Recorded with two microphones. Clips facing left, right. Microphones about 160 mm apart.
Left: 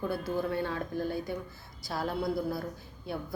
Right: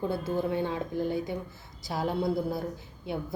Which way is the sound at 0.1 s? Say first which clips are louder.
Right 2 dB; 20° right (ahead or behind).